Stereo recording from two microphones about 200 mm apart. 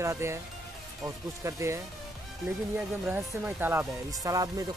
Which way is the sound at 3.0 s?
10° right (ahead or behind).